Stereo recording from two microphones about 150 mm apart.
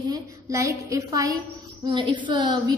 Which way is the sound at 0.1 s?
20° right (ahead or behind).